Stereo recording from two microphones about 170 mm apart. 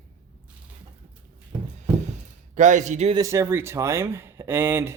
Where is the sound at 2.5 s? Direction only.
45° right (ahead or behind).